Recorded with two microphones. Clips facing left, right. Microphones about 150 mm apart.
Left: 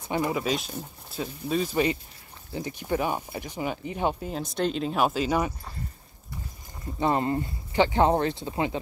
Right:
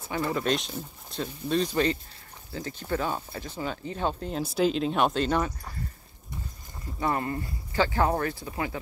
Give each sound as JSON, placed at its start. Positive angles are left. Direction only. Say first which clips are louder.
{"t": 0.0, "sound": "speech", "louder": "left 1 dB", "side_deg": 15}
{"t": 4.3, "sound": "speech", "louder": "right 2 dB", "side_deg": -5}
{"t": 7.0, "sound": "speech", "louder": "left 4 dB", "side_deg": 25}